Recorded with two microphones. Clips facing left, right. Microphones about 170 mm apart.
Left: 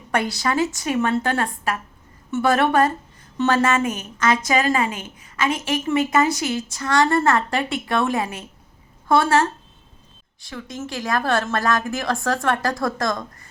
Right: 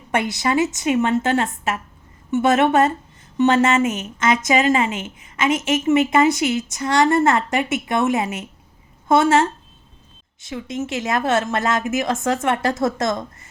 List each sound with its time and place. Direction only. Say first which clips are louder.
0.1 s a woman's voice: right 2 dB; 20° right (ahead or behind)